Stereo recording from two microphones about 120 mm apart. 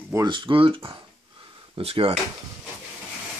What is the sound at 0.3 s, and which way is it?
Speech, 45° right (ahead or behind).